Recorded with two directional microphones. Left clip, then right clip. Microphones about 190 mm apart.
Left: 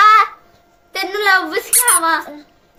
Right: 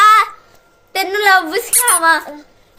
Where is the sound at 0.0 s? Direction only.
45° right (ahead or behind).